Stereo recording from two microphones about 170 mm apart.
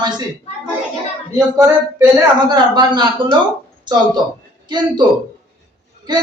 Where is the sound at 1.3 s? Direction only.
20° right (ahead or behind).